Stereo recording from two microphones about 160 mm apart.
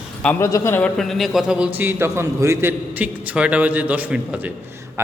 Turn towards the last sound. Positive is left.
turn(degrees=-15)  # may be behind; listen again after turning